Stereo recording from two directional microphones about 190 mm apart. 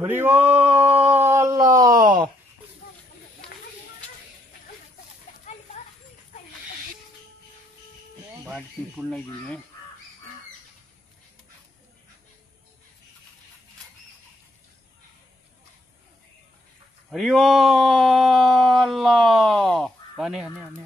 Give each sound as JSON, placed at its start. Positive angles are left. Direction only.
{"t": 0.0, "sound": "male singing", "side_deg": -10}
{"t": 0.9, "sound": "a sound", "side_deg": -10}
{"t": 2.0, "sound": "a sound", "side_deg": -45}
{"t": 5.8, "sound": "children playing", "side_deg": 35}
{"t": 8.5, "sound": "speech", "side_deg": 0}
{"t": 17.1, "sound": "speech", "side_deg": 0}